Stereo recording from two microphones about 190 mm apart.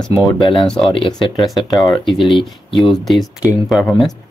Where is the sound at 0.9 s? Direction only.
25° left (ahead or behind).